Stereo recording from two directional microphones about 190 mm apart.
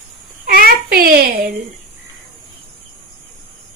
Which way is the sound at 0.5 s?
50° right (ahead or behind).